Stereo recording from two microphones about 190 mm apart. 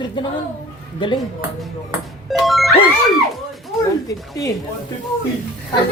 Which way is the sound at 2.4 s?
Centre (ahead or behind).